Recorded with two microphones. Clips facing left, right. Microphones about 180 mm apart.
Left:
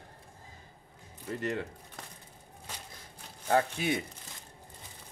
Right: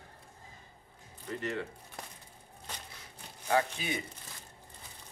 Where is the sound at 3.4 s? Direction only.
55° left (ahead or behind).